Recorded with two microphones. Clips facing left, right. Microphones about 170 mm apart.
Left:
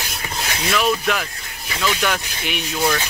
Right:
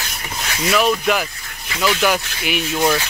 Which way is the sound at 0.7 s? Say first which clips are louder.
Right 3 dB; 5° right (ahead or behind).